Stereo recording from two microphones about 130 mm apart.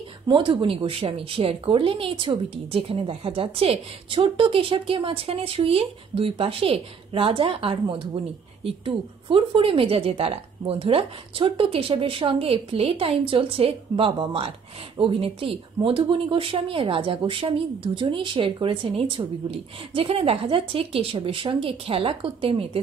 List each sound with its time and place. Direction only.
0.3 s speech: 40° right (ahead or behind)